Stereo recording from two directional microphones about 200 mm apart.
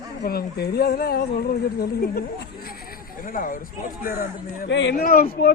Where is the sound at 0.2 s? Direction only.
50° left (ahead or behind).